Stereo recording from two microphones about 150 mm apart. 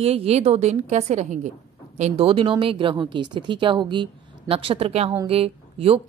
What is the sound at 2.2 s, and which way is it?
Speech, 35° right (ahead or behind).